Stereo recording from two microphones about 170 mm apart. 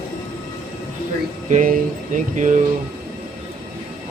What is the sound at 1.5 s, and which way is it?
Music, 50° right (ahead or behind).